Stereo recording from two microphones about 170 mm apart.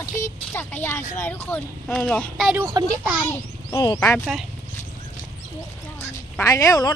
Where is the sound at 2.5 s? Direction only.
15° right (ahead or behind).